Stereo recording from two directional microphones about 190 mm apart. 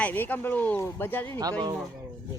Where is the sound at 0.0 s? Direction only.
10° left (ahead or behind).